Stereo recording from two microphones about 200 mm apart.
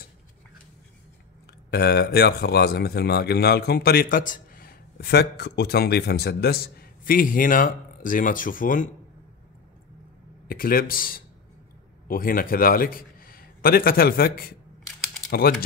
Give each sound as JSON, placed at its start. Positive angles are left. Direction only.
{"t": 1.7, "sound": "a man's voice", "side_deg": 55}
{"t": 10.5, "sound": "a man's voice", "side_deg": 45}